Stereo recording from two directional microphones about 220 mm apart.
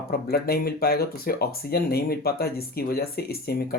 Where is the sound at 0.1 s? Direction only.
45° left (ahead or behind).